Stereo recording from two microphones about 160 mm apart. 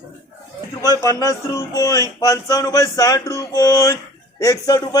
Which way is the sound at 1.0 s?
20° left (ahead or behind).